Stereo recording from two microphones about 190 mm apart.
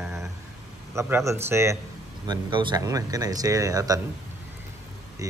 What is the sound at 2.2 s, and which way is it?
Speech, 25° right (ahead or behind).